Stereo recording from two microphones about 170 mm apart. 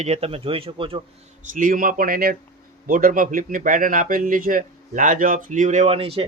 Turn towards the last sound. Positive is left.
turn(degrees=-35)  # may be behind; listen again after turning